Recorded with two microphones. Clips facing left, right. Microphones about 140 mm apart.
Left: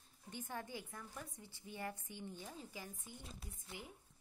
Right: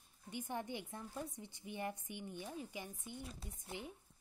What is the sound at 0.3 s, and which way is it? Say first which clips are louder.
A woman's voice: right 4 dB; 15° right (ahead or behind).